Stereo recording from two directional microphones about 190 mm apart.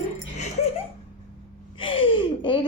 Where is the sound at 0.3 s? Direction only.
40° left (ahead or behind).